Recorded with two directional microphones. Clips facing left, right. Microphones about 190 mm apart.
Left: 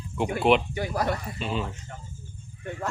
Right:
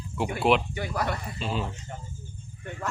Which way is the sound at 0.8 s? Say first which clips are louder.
Left 3 dB; 35° left (ahead or behind).